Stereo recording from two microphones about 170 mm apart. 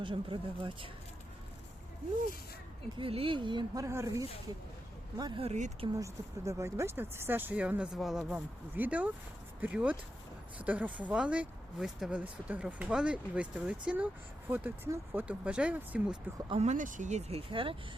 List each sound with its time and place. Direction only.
0.0 s speech: 30° right (ahead or behind)
3.0 s speech: 35° right (ahead or behind)
6.0 s speech: 15° right (ahead or behind)
16.5 s speech: 40° right (ahead or behind)